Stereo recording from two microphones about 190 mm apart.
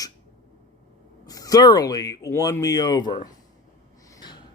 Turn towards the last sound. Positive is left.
turn(degrees=20)  # may be behind; listen again after turning